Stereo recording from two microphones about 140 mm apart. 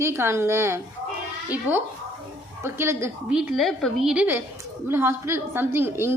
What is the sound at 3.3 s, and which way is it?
A woman's voice, centre (ahead or behind).